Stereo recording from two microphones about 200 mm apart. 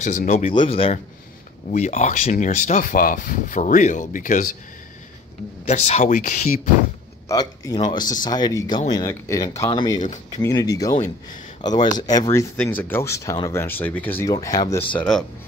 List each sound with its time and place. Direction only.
0.0 s speech: 40° left (ahead or behind)
5.7 s speech: 35° left (ahead or behind)
7.2 s speech: 20° left (ahead or behind)
14.3 s speech: 20° left (ahead or behind)
15.0 s speech: 5° left (ahead or behind)